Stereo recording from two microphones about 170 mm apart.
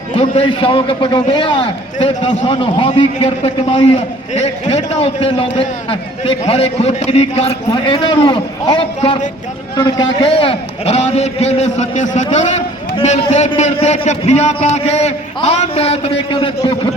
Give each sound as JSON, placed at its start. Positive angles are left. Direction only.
{"t": 0.2, "sound": "a man's voice", "side_deg": 35}
{"t": 9.0, "sound": "a man's voice", "side_deg": 40}
{"t": 9.7, "sound": "a man's voice", "side_deg": 25}